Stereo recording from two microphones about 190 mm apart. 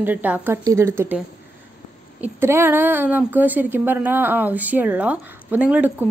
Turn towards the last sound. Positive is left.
turn(degrees=-10)  # may be behind; listen again after turning